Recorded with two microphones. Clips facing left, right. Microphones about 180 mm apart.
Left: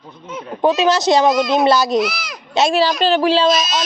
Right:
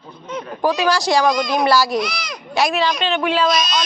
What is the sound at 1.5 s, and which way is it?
Speech, 20° left (ahead or behind).